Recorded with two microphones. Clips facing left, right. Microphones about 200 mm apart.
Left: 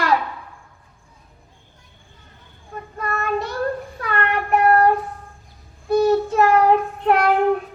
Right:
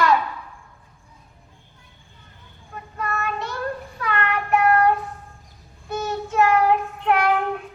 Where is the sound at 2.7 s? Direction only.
40° left (ahead or behind).